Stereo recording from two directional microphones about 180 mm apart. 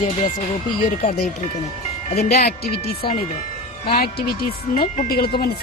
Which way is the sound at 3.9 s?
60° left (ahead or behind).